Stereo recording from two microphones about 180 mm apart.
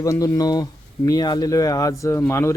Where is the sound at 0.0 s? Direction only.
20° left (ahead or behind).